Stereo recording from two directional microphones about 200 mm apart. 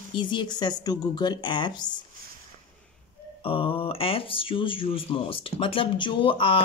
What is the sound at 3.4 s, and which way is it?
Speech, 25° left (ahead or behind).